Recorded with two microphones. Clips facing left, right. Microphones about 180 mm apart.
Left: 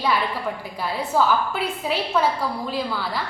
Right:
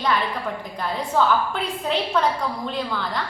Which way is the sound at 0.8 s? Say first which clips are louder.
Even; 5° left (ahead or behind).